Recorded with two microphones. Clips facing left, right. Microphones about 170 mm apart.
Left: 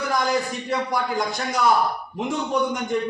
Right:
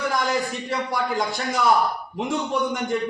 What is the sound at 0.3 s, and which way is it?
A man's voice, centre (ahead or behind).